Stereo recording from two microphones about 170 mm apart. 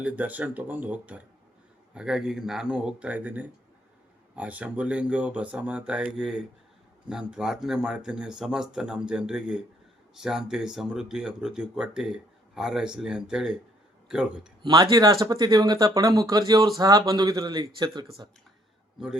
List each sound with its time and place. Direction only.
0.0 s speech: 10° right (ahead or behind)
14.6 s speech: 25° right (ahead or behind)
18.9 s speech: 5° right (ahead or behind)